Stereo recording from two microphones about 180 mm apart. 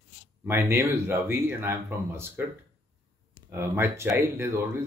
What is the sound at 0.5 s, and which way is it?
Speech, 15° right (ahead or behind).